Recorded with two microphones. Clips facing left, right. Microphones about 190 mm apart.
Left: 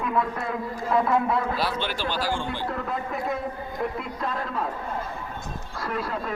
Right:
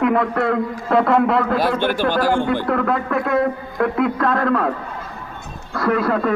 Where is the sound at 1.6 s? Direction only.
50° right (ahead or behind).